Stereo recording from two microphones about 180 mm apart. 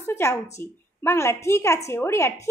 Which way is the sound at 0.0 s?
15° left (ahead or behind).